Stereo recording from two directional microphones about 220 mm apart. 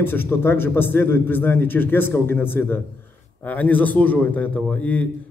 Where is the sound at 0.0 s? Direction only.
10° left (ahead or behind).